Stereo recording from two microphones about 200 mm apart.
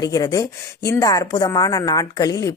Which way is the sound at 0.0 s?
20° left (ahead or behind).